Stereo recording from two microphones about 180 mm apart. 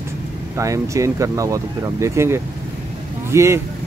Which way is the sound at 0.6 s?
15° right (ahead or behind).